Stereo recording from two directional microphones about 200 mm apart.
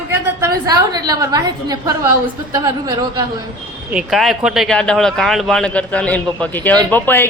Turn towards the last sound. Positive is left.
turn(degrees=10)  # may be behind; listen again after turning